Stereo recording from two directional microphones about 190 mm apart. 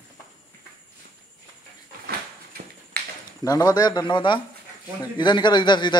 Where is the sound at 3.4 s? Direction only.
20° left (ahead or behind).